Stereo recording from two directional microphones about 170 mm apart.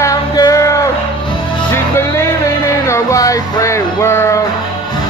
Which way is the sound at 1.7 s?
15° left (ahead or behind).